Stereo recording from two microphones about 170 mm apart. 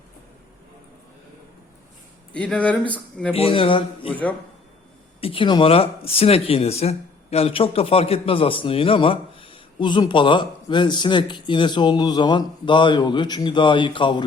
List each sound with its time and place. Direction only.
2.3 s speech: 5° left (ahead or behind)
3.3 s a man's voice: 35° left (ahead or behind)
4.1 s speech: 10° left (ahead or behind)
5.2 s speech: 30° left (ahead or behind)